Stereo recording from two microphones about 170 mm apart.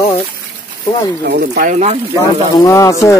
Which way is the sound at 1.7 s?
45° right (ahead or behind).